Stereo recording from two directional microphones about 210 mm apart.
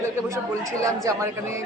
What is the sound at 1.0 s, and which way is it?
Speech, 15° right (ahead or behind).